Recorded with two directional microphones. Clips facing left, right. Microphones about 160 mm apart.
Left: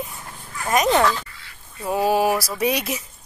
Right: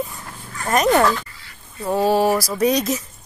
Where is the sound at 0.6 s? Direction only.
5° left (ahead or behind).